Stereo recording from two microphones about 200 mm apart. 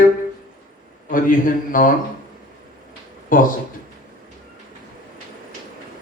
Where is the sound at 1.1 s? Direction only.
45° left (ahead or behind).